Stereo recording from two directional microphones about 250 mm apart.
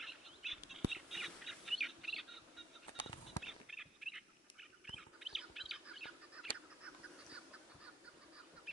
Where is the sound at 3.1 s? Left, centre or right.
Left.